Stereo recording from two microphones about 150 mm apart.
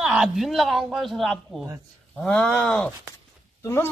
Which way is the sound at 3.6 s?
15° left (ahead or behind).